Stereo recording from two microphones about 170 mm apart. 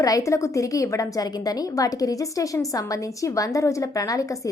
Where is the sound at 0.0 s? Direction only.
20° left (ahead or behind).